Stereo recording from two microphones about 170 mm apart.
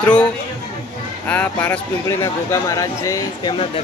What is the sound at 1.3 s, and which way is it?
Speech, 10° left (ahead or behind).